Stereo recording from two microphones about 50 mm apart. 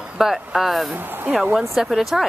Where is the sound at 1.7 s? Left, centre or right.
Centre.